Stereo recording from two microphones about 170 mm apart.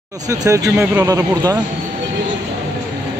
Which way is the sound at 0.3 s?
20° right (ahead or behind).